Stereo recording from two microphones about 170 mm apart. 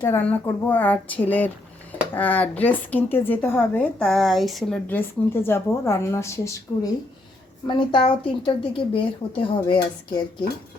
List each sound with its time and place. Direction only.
0.0 s speech: 15° left (ahead or behind)
7.7 s a woman's voice: 30° left (ahead or behind)